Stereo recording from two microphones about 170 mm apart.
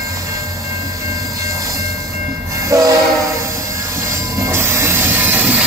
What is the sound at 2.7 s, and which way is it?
Train, 20° right (ahead or behind).